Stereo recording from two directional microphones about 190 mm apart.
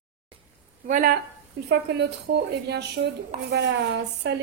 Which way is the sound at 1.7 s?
60° right (ahead or behind).